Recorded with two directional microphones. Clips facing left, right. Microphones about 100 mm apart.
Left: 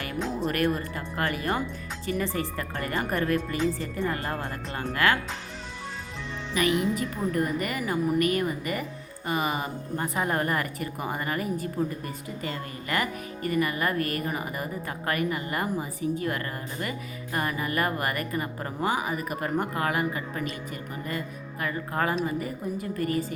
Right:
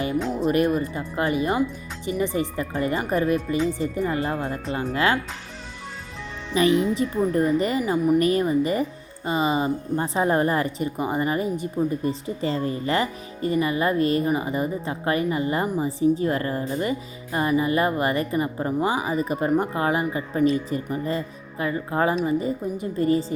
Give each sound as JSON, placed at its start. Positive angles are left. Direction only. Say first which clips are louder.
{"t": 0.4, "sound": "speech", "louder": "right 6 dB", "side_deg": -20}
{"t": 6.5, "sound": "speech", "louder": "right 5 dB", "side_deg": -30}